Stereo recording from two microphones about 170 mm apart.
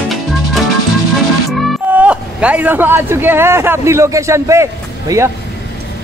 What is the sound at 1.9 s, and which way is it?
Speech, 10° right (ahead or behind).